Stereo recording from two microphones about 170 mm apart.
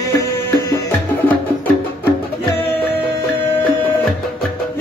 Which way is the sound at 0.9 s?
10° left (ahead or behind).